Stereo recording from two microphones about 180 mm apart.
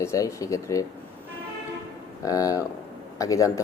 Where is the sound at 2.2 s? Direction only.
20° left (ahead or behind).